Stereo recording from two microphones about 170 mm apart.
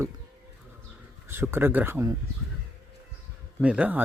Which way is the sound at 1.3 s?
15° right (ahead or behind).